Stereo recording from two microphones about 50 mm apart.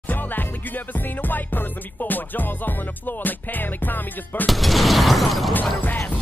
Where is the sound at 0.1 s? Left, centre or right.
Left.